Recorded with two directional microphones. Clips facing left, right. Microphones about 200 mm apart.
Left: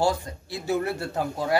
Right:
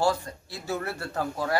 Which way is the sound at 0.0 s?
15° left (ahead or behind).